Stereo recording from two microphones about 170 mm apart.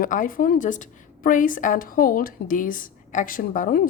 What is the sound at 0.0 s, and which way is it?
A woman's voice, 55° left (ahead or behind).